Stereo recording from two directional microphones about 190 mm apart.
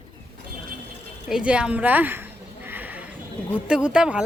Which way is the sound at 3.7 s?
5° right (ahead or behind).